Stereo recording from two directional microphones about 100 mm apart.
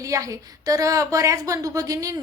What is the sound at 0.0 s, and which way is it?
A woman's voice, 35° right (ahead or behind).